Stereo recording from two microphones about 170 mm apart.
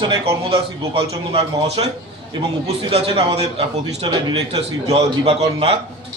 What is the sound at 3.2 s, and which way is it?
Speech, 35° right (ahead or behind).